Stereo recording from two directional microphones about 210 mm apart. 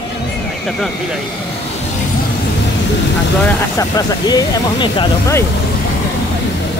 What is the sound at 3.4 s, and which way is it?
Speech, 15° left (ahead or behind).